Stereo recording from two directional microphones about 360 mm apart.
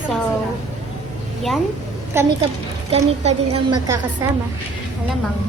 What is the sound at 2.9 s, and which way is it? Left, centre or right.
Speech, centre.